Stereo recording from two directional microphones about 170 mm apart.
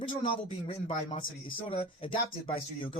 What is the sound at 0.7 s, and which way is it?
Speech, 35° left (ahead or behind).